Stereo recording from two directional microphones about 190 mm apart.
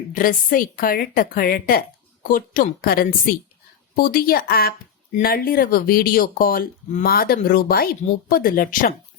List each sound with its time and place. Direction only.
0.1 s speech: 45° left (ahead or behind)